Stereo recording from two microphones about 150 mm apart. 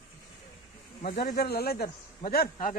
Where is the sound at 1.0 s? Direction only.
85° left.